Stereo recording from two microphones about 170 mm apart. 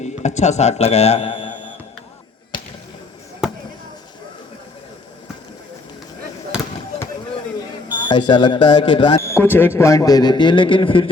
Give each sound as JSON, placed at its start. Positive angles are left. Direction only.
{"t": 0.0, "sound": "a man's voice", "side_deg": 40}
{"t": 3.4, "sound": "basketball bounce", "side_deg": -5}
{"t": 7.9, "sound": "a man's voice", "side_deg": 25}
{"t": 9.3, "sound": "a man's voice", "side_deg": 10}